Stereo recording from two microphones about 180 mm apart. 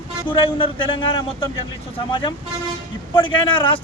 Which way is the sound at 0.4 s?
30° left (ahead or behind).